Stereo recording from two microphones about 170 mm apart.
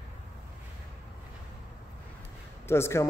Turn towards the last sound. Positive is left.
turn(degrees=15)  # may be behind; listen again after turning